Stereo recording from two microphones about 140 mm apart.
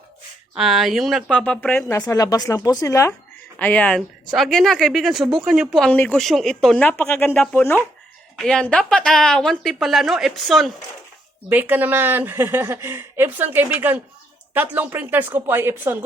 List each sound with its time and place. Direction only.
0.5 s a woman's voice: centre (ahead or behind)
1.9 s speech: 25° left (ahead or behind)
3.6 s a woman's voice: 10° left (ahead or behind)
11.4 s a woman's voice: 10° right (ahead or behind)